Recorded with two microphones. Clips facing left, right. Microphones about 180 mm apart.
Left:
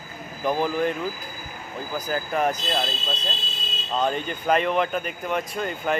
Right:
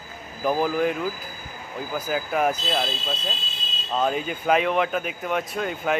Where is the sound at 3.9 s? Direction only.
5° right (ahead or behind).